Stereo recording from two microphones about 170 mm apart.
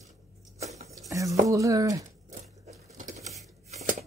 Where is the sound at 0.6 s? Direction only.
40° right (ahead or behind).